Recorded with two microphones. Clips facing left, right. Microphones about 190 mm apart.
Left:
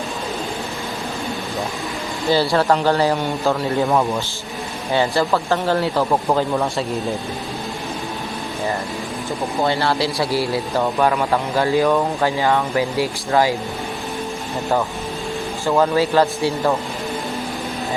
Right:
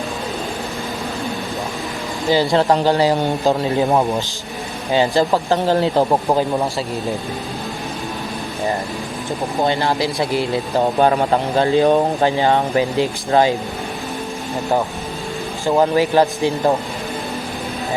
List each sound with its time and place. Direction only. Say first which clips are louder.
2.3 s speech: right 2 dB; 15° right (ahead or behind)
9.6 s speech: right 1 dB; 15° right (ahead or behind)
15.6 s speech: right 2 dB; 15° right (ahead or behind)